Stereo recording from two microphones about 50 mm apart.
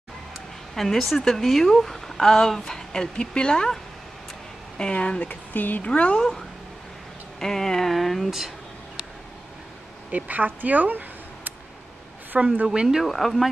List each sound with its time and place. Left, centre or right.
0.7 s a woman's voice: centre; by 5.3 s left
5.3 s speech: left
5.9 s speech: left
7.3 s a woman's voice: centre
10.1 s speech: right
12.6 s speech: centre
13.0 s speech: centre